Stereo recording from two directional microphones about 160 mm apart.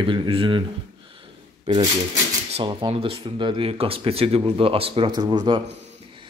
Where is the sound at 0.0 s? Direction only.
30° right (ahead or behind).